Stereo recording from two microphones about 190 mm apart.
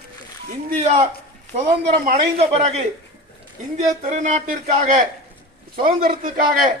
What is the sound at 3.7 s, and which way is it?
A man's voice, 40° right (ahead or behind).